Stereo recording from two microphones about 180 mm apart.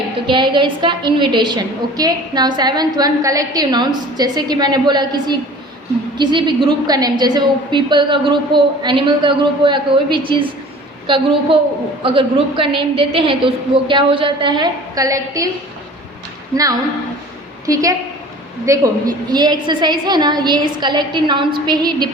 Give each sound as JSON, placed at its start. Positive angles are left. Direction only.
{"t": 0.3, "sound": "a woman's voice", "side_deg": -25}
{"t": 17.7, "sound": "a woman's voice", "side_deg": -20}